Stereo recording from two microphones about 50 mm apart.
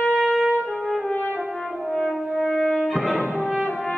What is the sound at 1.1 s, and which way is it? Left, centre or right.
French horn, left.